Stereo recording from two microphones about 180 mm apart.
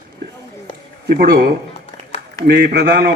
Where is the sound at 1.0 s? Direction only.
60° right (ahead or behind).